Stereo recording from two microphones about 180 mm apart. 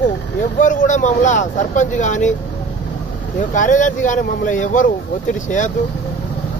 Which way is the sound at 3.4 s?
45° left (ahead or behind).